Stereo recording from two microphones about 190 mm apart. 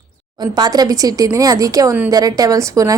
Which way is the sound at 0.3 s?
20° right (ahead or behind).